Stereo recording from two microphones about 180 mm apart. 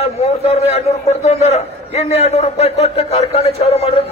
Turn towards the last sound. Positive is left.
turn(degrees=35)  # may be behind; listen again after turning